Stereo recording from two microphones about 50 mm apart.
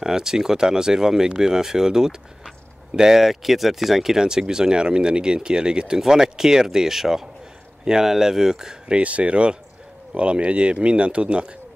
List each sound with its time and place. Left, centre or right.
0.0 s speech: centre